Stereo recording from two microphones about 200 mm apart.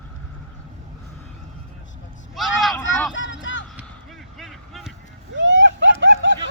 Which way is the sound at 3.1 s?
70° left (ahead or behind).